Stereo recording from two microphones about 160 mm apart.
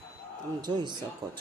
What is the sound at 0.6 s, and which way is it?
Speech, 30° right (ahead or behind).